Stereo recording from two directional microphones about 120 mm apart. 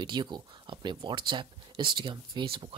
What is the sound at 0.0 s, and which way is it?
Speech, 40° right (ahead or behind).